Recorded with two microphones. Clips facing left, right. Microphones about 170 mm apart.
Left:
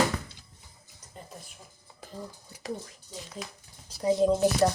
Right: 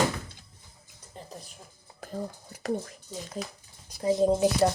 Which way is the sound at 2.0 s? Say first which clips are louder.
Right 6 dB; 50° right (ahead or behind).